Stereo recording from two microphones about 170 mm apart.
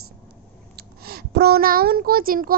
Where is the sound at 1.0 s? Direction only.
65° right (ahead or behind).